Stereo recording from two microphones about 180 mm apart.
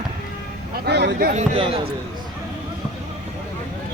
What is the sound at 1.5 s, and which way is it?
Speech, 30° right (ahead or behind).